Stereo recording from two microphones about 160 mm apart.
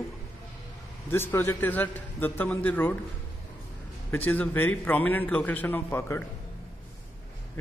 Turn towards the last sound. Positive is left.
turn(degrees=15)  # may be behind; listen again after turning